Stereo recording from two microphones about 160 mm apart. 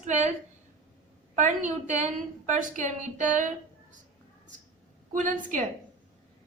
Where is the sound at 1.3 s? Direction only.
50° right (ahead or behind).